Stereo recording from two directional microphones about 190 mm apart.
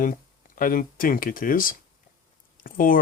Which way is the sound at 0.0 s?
45° left (ahead or behind).